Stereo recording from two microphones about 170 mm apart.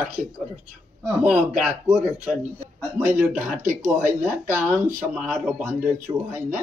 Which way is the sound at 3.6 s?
45° right (ahead or behind).